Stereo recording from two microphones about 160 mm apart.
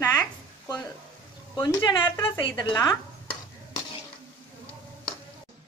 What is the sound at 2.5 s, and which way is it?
Stir, 30° left (ahead or behind).